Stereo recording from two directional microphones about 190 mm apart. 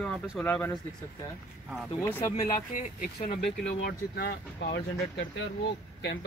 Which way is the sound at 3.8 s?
55° left (ahead or behind).